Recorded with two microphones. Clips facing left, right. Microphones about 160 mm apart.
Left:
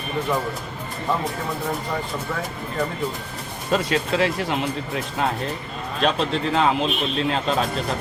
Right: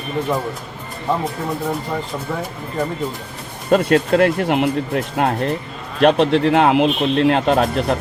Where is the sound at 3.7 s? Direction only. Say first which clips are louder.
Right 8 dB; 55° right (ahead or behind).